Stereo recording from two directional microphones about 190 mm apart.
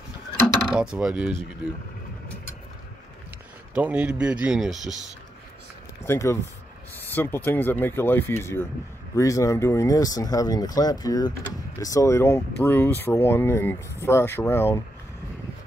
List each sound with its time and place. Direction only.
0.7 s speech: 5° right (ahead or behind)
3.7 s speech: 5° right (ahead or behind)
6.0 s speech: 15° left (ahead or behind)